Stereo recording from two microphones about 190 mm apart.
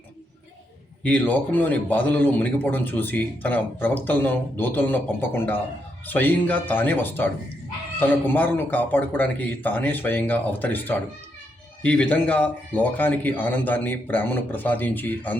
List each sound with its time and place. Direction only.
1.0 s a man's voice: 5° left (ahead or behind)